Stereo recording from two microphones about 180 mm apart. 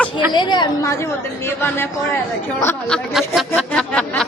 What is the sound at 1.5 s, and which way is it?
Speech, 10° left (ahead or behind).